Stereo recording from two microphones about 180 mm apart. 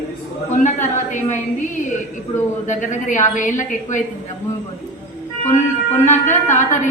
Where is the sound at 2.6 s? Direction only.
45° left (ahead or behind).